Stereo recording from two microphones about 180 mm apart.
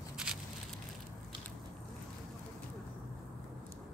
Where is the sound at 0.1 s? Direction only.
5° right (ahead or behind).